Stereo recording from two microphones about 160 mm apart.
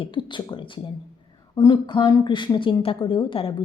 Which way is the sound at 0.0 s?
30° left (ahead or behind).